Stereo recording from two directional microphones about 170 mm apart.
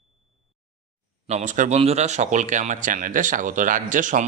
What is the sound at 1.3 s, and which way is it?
Speech, 45° right (ahead or behind).